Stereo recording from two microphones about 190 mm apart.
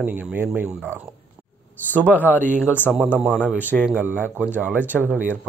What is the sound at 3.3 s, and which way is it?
Speech, 10° left (ahead or behind).